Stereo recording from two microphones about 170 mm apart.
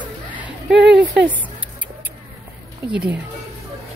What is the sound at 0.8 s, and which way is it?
Speech, 90° right.